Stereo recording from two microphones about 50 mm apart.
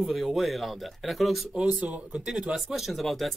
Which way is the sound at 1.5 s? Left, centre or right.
Right.